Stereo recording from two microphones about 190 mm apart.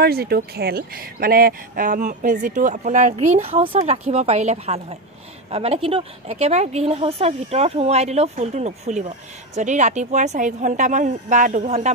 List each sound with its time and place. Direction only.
0.0 s speech: 55° right (ahead or behind); by 11.9 s 40° right (ahead or behind)